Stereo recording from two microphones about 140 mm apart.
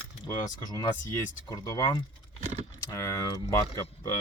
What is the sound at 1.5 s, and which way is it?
Speech, 25° left (ahead or behind).